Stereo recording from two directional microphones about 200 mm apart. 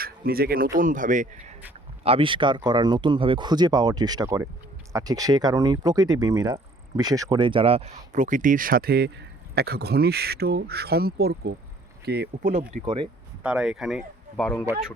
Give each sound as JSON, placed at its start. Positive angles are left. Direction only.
{"t": 0.0, "sound": "speech", "side_deg": -50}
{"t": 2.0, "sound": "speech", "side_deg": -25}
{"t": 12.4, "sound": "speech", "side_deg": -40}
{"t": 12.8, "sound": "speech", "side_deg": -25}
{"t": 13.4, "sound": "speech", "side_deg": -5}